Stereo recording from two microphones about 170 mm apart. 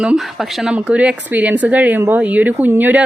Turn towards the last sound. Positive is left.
turn(degrees=-10)  # may be behind; listen again after turning